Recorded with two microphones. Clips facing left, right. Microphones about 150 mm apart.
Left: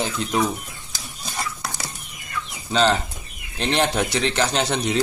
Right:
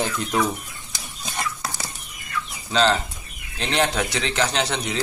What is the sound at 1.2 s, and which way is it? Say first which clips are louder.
Stir: right 1 dB; centre (ahead or behind).